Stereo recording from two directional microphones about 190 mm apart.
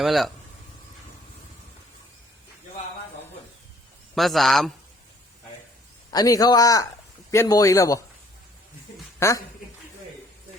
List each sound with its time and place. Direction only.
0.0 s a man's voice: centre (ahead or behind)
4.1 s a man's voice: centre (ahead or behind)
6.1 s speech: 20° left (ahead or behind)
9.1 s speech: 15° left (ahead or behind)